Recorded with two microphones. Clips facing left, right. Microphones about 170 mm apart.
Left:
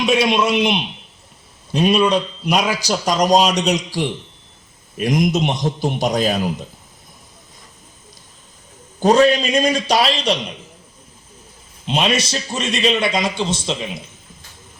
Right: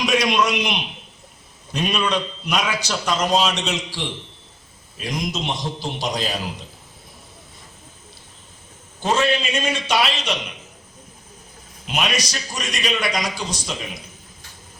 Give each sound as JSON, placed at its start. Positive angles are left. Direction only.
{"t": 0.0, "sound": "a man's voice", "side_deg": 30}
{"t": 9.0, "sound": "a man's voice", "side_deg": 40}
{"t": 11.9, "sound": "a man's voice", "side_deg": 30}